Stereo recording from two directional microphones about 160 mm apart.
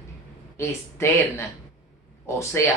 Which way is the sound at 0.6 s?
15° left (ahead or behind).